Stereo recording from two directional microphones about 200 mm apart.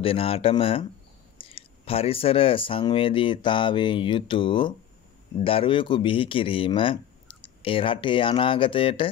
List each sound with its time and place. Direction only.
0.0 s speech: 30° left (ahead or behind)